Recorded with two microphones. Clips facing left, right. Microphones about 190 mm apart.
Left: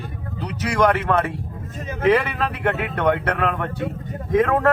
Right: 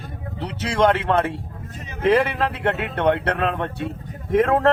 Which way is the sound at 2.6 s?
25° right (ahead or behind).